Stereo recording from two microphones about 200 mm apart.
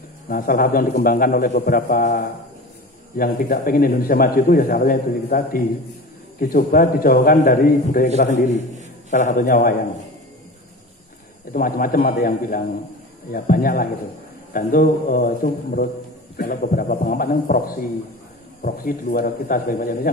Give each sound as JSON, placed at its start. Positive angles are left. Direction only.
{"t": 0.3, "sound": "a man's voice", "side_deg": 45}
{"t": 11.5, "sound": "a man's voice", "side_deg": 45}